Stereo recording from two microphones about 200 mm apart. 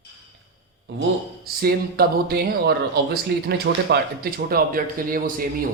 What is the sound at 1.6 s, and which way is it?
Speech, 50° right (ahead or behind).